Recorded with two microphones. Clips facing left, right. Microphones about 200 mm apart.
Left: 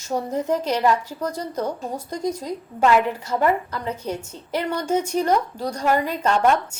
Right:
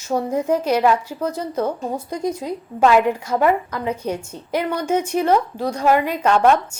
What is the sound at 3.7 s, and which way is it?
A woman's voice, 10° right (ahead or behind).